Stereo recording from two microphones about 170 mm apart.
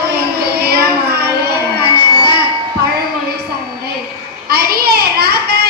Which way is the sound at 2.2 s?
65° right (ahead or behind).